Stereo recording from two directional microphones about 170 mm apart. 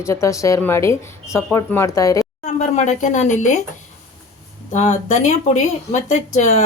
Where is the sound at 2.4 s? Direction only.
45° left (ahead or behind).